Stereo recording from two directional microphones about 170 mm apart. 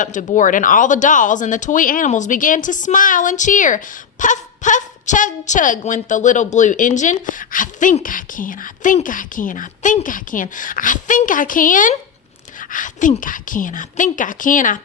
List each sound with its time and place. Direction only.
0.0 s speech: 50° left (ahead or behind)